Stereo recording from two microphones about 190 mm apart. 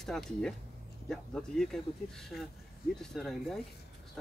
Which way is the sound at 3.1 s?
Centre (ahead or behind).